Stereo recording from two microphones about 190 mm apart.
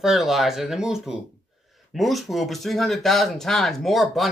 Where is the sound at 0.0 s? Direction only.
Centre (ahead or behind).